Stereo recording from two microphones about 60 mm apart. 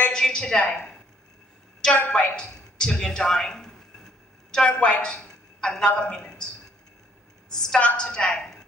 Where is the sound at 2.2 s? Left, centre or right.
Centre.